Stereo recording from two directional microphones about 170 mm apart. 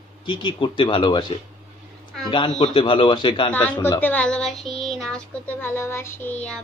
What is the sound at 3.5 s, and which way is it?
Speech, 10° left (ahead or behind).